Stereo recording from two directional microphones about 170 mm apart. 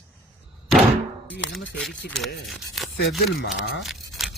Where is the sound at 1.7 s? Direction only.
5° left (ahead or behind).